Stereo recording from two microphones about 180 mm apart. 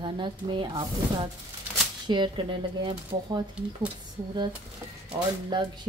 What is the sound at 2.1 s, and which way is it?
Speech, 25° right (ahead or behind).